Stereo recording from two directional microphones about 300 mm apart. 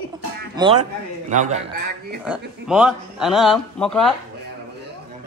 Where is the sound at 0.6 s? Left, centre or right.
Centre.